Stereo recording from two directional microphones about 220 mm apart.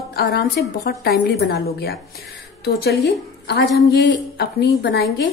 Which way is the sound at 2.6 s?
50° left (ahead or behind).